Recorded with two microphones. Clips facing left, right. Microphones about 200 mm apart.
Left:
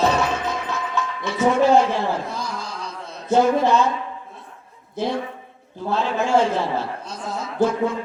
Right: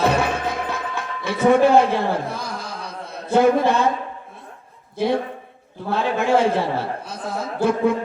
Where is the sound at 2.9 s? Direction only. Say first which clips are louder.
Left 3 dB; 55° right (ahead or behind).